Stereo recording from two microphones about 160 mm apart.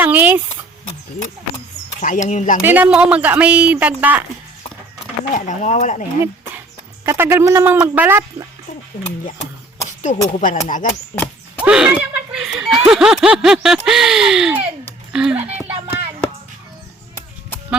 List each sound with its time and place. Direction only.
0.0 s speech: 10° right (ahead or behind)
2.0 s speech: 50° left (ahead or behind)
2.6 s speech: 10° right (ahead or behind)
5.3 s speech: 50° left (ahead or behind)
7.0 s speech: 15° right (ahead or behind)
10.0 s speech: 50° left (ahead or behind)
11.1 s a sound: 10° left (ahead or behind)
11.6 s a sound: 5° right (ahead or behind)
15.5 s music: 10° right (ahead or behind)